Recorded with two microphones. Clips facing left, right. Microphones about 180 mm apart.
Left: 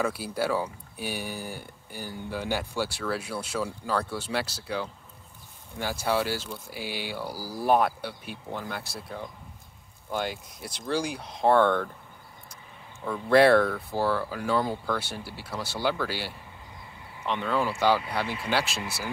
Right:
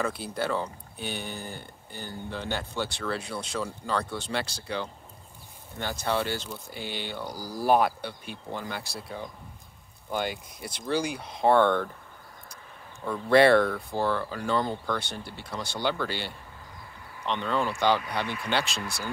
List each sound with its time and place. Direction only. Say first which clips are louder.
0.0 s speech: left 2 dB; 5° left (ahead or behind)
13.0 s speech: even; centre (ahead or behind)
18.2 s speech: left 1 dB; 30° left (ahead or behind)
18.5 s speech: left 1 dB; 5° left (ahead or behind)